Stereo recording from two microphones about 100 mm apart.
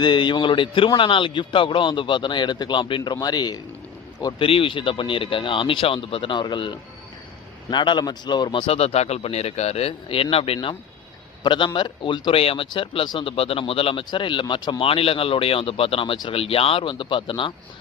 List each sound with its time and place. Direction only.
0.0 s a man's voice: 50° left (ahead or behind)
4.4 s a man's voice: 65° left (ahead or behind); by 8.6 s 45° left (ahead or behind)
8.6 s speech: 90° left; by 10.8 s 65° left (ahead or behind)
11.4 s speech: 55° left (ahead or behind)
12.3 s speech: 70° left (ahead or behind)
14.1 s speech: 55° left (ahead or behind)